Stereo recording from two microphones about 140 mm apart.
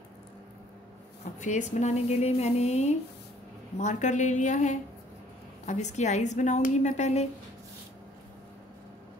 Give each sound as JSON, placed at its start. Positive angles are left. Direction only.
{"t": 1.4, "sound": "a woman's voice", "side_deg": 60}